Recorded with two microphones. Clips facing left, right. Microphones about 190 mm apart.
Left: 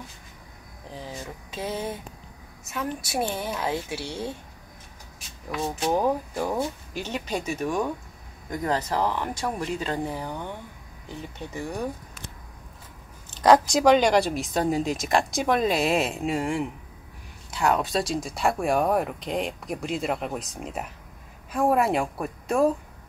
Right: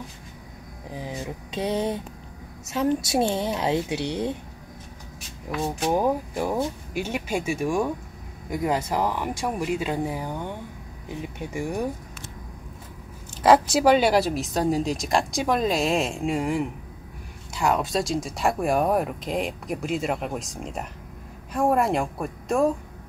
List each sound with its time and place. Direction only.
0.9 s a woman's voice: 15° right (ahead or behind)
5.5 s speech: centre (ahead or behind)
13.4 s speech: 5° right (ahead or behind)